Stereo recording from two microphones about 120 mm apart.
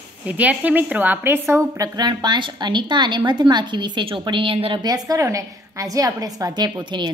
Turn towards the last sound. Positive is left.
turn(degrees=-40)  # may be behind; listen again after turning